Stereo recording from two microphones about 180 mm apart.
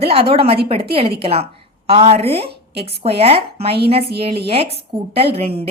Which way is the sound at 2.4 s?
65° right (ahead or behind).